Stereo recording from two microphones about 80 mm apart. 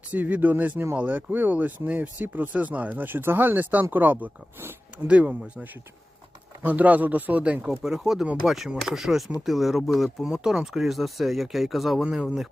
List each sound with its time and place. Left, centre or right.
0.1 s speech: centre
6.6 s speech: centre
7.8 s a man's voice: centre